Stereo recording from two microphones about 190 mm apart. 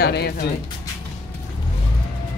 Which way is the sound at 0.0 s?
55° left (ahead or behind).